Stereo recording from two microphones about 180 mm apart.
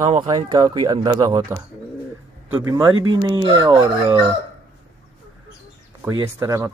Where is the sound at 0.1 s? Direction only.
30° right (ahead or behind).